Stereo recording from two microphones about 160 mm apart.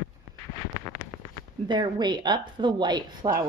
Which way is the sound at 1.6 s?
25° right (ahead or behind).